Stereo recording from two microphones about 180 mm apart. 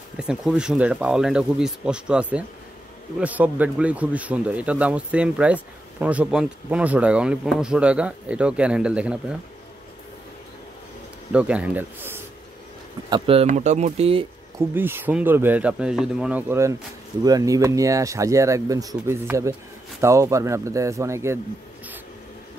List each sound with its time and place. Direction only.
0.2 s speech: 5° right (ahead or behind)
11.3 s speech: 5° right (ahead or behind)
13.1 s speech: 30° right (ahead or behind)
14.7 s speech: 10° right (ahead or behind)